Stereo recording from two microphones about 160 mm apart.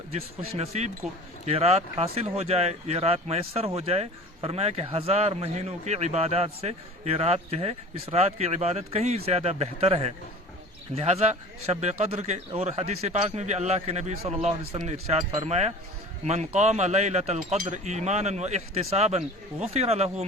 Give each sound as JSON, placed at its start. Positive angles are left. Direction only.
{"t": 0.1, "sound": "a man's voice", "side_deg": -40}